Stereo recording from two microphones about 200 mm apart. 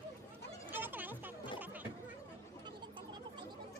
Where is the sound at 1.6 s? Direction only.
10° right (ahead or behind).